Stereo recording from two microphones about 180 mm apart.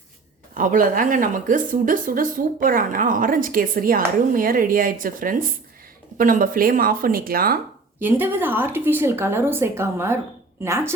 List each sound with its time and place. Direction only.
0.5 s a woman's voice: 50° right (ahead or behind)
7.9 s speech: 10° right (ahead or behind)